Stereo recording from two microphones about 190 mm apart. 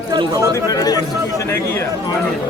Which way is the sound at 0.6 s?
20° left (ahead or behind).